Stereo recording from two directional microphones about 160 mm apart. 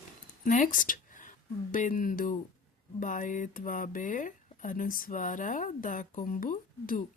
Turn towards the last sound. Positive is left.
turn(degrees=60)  # may be behind; listen again after turning